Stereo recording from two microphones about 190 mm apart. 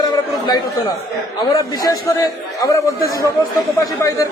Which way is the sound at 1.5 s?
20° left (ahead or behind).